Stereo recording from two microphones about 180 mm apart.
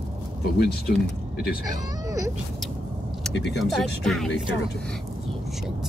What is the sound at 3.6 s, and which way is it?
Speech, centre (ahead or behind).